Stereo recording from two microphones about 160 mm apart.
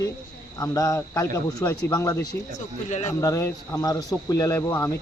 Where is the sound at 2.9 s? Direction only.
45° left (ahead or behind).